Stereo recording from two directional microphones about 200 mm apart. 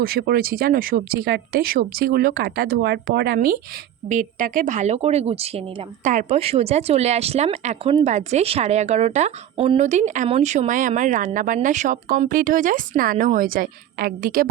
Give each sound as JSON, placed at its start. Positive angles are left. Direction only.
{"t": 0.0, "sound": "speech", "side_deg": -50}
{"t": 4.1, "sound": "a woman's voice", "side_deg": -40}